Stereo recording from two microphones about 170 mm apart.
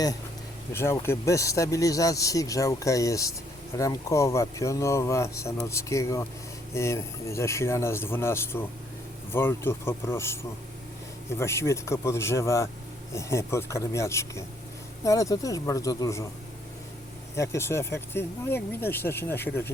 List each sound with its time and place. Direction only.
0.7 s speech: 15° left (ahead or behind)
17.3 s speech: 15° left (ahead or behind)